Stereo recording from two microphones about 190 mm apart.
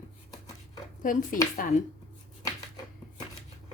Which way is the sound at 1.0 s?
45° left (ahead or behind).